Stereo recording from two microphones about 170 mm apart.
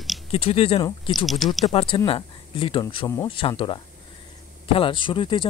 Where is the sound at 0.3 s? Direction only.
35° left (ahead or behind).